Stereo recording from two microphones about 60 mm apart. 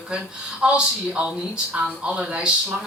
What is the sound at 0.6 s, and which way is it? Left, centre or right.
Speech, centre.